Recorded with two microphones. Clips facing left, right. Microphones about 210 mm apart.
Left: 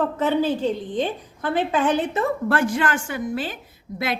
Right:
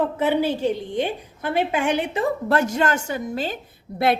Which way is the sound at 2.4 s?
40° right (ahead or behind).